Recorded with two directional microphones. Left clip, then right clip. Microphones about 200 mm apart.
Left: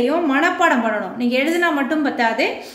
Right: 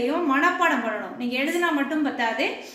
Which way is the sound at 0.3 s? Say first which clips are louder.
Left 2 dB; 50° left (ahead or behind).